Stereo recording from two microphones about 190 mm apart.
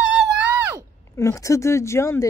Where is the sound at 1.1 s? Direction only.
15° left (ahead or behind).